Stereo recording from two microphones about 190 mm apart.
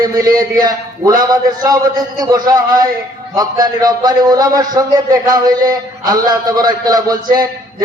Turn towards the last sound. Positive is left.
turn(degrees=-20)  # may be behind; listen again after turning